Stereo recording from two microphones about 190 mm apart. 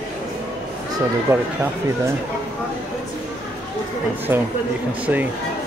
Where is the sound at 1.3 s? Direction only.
15° right (ahead or behind).